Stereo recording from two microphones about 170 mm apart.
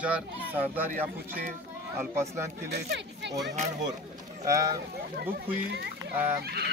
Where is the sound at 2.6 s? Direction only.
85° right.